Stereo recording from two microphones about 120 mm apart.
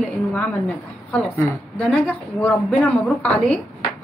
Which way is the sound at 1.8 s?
10° left (ahead or behind).